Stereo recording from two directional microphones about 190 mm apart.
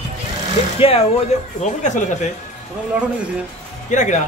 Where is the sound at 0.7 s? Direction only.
30° left (ahead or behind).